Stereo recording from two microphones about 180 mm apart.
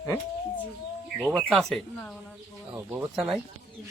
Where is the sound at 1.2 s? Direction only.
Centre (ahead or behind).